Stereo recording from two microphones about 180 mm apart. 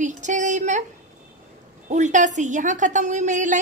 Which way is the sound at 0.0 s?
40° right (ahead or behind).